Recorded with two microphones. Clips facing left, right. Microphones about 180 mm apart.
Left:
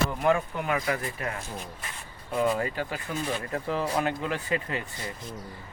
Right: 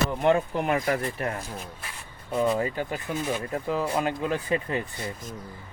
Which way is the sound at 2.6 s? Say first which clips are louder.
Right 2 dB; 20° right (ahead or behind).